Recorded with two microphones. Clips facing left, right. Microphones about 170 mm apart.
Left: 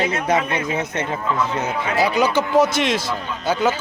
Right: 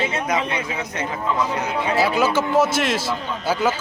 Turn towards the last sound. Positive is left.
turn(degrees=-5)  # may be behind; listen again after turning